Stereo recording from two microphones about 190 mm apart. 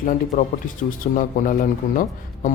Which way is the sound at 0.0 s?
45° left (ahead or behind).